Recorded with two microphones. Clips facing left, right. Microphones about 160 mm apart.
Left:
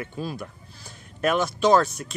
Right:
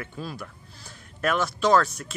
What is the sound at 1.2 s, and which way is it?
Speech, 15° left (ahead or behind).